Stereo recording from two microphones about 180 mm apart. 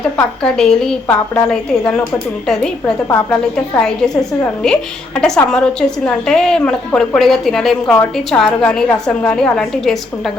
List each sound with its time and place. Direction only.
0.4 s a woman's voice: 5° left (ahead or behind)